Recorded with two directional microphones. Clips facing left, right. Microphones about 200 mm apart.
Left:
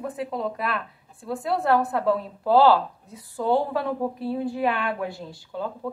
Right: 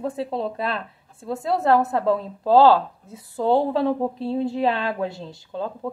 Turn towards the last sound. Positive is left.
turn(degrees=-20)  # may be behind; listen again after turning